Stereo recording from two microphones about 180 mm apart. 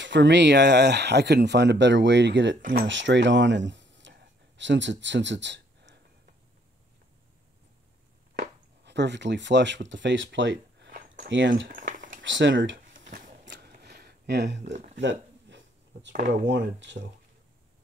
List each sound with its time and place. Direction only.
0.0 s speech: 85° right
2.6 s speech: 55° right (ahead or behind)
2.9 s speech: 90° right
8.4 s speech: 75° right (ahead or behind); by 11.7 s 90° right
11.7 s a sound: 45° right (ahead or behind)
12.1 s speech: 90° right
13.5 s a sound: 65° right (ahead or behind)
15.0 s a sound: 90° right
16.4 s speech: 90° right